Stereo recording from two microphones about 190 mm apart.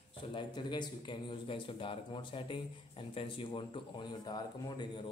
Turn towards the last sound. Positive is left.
turn(degrees=25)  # may be behind; listen again after turning